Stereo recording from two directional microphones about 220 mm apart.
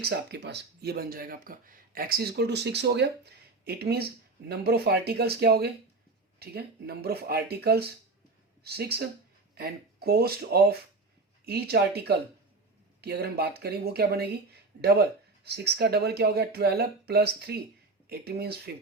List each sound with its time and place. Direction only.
0.0 s speech: 50° right (ahead or behind)